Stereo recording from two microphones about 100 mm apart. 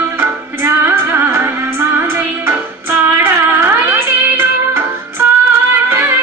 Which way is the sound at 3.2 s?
25° right (ahead or behind).